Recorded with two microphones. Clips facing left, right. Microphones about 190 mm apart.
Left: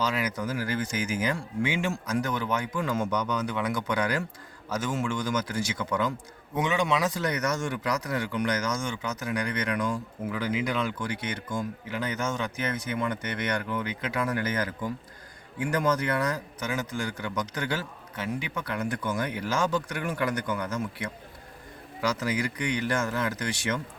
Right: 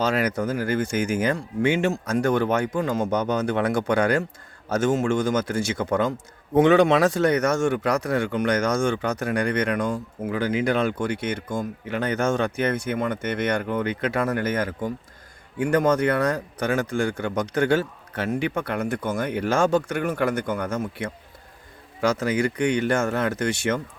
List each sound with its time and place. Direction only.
0.0 s a man's voice: 60° right (ahead or behind)
2.7 s speech: 40° right (ahead or behind)
3.3 s a man's voice: 50° right (ahead or behind)